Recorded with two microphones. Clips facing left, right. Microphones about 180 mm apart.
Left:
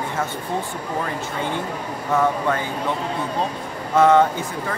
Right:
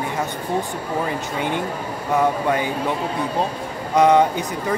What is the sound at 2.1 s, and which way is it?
Speech, 15° right (ahead or behind).